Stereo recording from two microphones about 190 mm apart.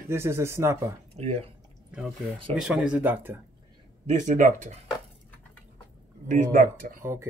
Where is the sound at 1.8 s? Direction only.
5° right (ahead or behind).